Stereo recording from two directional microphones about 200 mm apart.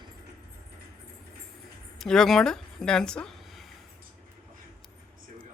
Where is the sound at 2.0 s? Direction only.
Centre (ahead or behind).